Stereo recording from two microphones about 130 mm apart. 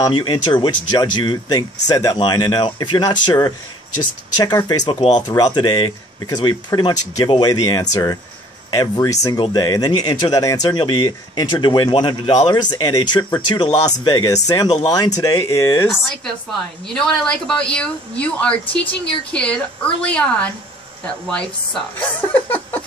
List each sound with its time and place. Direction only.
0.0 s speech: 35° left (ahead or behind)
4.6 s speech: 30° left (ahead or behind)
16.8 s speech: 5° left (ahead or behind)